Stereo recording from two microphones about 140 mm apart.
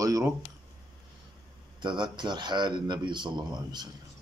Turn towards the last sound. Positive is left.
turn(degrees=-30)  # may be behind; listen again after turning